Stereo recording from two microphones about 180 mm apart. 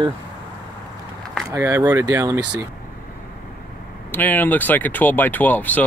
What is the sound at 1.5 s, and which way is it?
Speech, 15° right (ahead or behind).